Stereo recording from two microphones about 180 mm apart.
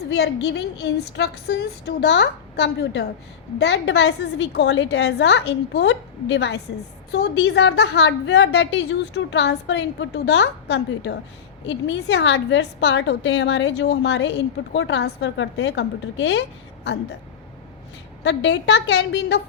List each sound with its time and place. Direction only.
0.1 s a woman's voice: 70° left (ahead or behind)
18.2 s a woman's voice: 75° left (ahead or behind)